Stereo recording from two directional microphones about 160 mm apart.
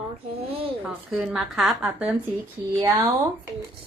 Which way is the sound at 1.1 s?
5° right (ahead or behind).